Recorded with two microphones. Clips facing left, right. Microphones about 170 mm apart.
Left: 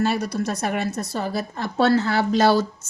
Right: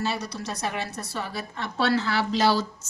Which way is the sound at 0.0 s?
50° left (ahead or behind).